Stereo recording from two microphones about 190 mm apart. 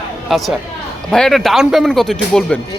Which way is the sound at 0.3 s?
Centre (ahead or behind).